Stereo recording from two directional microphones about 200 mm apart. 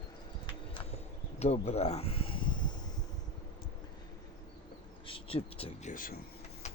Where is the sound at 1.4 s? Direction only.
30° left (ahead or behind).